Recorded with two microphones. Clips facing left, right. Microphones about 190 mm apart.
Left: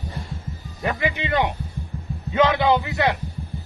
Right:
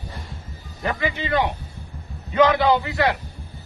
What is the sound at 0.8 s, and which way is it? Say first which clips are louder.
Speech: even; 15° left (ahead or behind).